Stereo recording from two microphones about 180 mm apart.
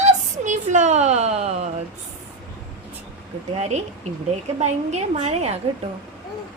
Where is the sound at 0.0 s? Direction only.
40° right (ahead or behind).